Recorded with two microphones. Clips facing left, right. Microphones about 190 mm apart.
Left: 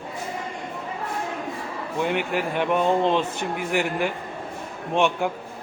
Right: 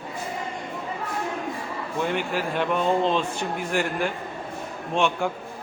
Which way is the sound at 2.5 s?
15° left (ahead or behind).